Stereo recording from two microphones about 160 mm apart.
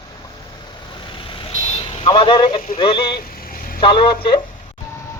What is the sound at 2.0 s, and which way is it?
A man's voice, 30° left (ahead or behind).